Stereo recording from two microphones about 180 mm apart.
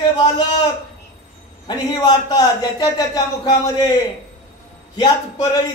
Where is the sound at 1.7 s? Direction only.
25° left (ahead or behind).